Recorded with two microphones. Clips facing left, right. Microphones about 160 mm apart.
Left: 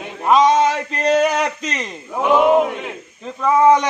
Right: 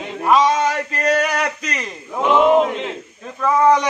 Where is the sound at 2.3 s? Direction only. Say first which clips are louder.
Even; 15° left (ahead or behind).